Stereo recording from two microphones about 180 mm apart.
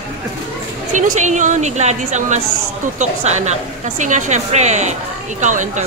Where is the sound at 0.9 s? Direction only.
45° right (ahead or behind).